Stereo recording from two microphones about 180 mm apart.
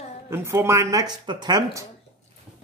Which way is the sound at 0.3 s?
15° right (ahead or behind).